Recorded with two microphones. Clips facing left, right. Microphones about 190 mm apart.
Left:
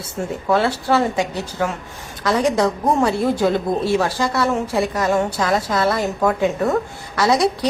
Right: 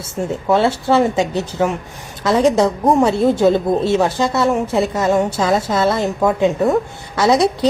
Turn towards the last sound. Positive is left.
turn(degrees=-25)  # may be behind; listen again after turning